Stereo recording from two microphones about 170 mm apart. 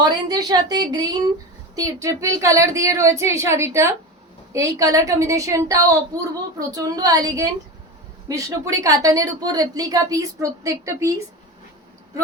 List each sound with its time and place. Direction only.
0.3 s a woman's voice: 25° right (ahead or behind)